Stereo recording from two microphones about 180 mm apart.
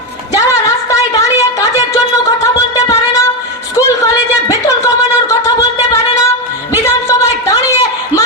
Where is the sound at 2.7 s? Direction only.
20° left (ahead or behind).